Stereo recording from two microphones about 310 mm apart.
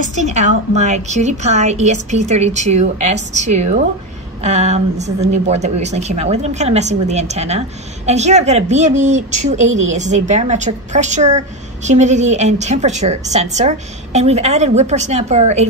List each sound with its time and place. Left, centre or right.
0.1 s a woman's voice: right